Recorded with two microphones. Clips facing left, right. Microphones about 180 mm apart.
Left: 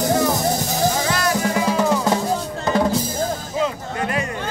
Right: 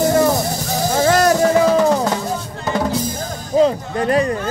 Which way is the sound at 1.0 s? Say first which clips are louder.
Right 7 dB; 45° right (ahead or behind).